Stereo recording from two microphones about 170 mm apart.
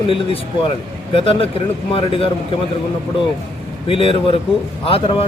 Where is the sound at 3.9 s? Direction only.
35° left (ahead or behind).